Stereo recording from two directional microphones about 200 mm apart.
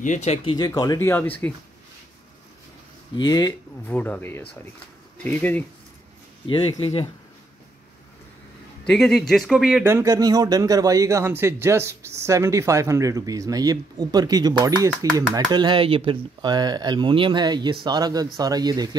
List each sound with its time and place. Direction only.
0.0 s speech: 35° left (ahead or behind)
0.6 s speech: 20° left (ahead or behind)
3.2 s speech: 20° left (ahead or behind)
6.4 s speech: 25° left (ahead or behind)
8.8 s speech: centre (ahead or behind)
9.8 s a man's voice: 15° right (ahead or behind)